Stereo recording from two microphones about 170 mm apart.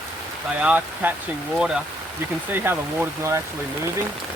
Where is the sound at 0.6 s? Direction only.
10° right (ahead or behind).